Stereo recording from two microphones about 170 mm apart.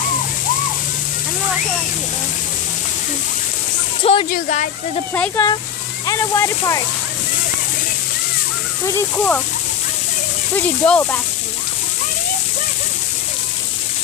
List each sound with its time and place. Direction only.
4.0 s speech: 35° left (ahead or behind)
4.3 s speech: 45° left (ahead or behind)
5.1 s speech: 10° left (ahead or behind)
8.9 s speech: 10° left (ahead or behind)
10.5 s speech: 10° left (ahead or behind)